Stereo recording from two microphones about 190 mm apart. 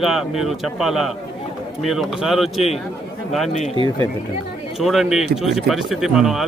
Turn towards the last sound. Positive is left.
turn(degrees=-5)  # may be behind; listen again after turning